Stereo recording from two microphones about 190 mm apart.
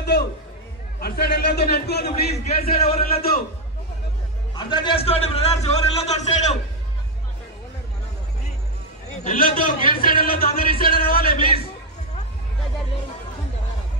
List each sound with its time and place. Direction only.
0.0 s music: 60° left (ahead or behind)
0.9 s a man's voice: 55° left (ahead or behind)
2.3 s a man's voice: 30° left (ahead or behind)
3.0 s a man's voice: 50° left (ahead or behind)
4.6 s a man's voice: 25° left (ahead or behind)
9.2 s a man's voice: 50° left (ahead or behind)